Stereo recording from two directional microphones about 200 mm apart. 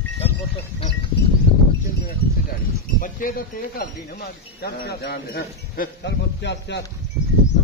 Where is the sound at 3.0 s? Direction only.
45° left (ahead or behind).